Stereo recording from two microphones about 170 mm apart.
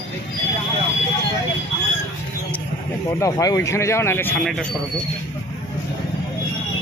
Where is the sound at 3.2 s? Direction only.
20° left (ahead or behind).